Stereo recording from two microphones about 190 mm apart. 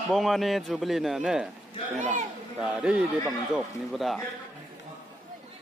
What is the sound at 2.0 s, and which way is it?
Speech, 40° right (ahead or behind).